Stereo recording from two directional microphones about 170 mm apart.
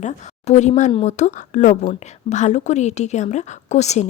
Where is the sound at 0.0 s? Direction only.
45° left (ahead or behind).